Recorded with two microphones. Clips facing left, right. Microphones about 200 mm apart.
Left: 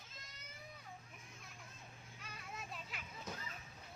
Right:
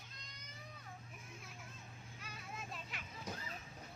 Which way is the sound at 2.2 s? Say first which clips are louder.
Right 1 dB; centre (ahead or behind).